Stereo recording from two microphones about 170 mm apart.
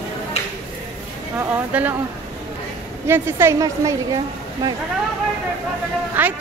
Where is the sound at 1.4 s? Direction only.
10° right (ahead or behind).